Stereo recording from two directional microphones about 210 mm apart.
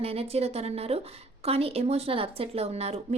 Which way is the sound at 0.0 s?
30° right (ahead or behind).